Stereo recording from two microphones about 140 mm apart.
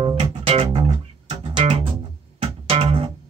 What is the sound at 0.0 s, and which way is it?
Music, 40° right (ahead or behind).